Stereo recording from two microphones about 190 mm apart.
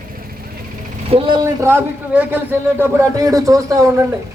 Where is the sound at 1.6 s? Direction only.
10° right (ahead or behind).